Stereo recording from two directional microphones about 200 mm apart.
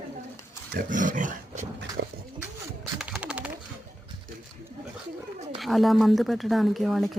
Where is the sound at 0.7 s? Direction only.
40° right (ahead or behind).